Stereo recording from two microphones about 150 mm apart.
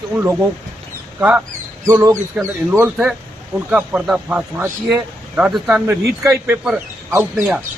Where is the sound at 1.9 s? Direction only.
15° right (ahead or behind).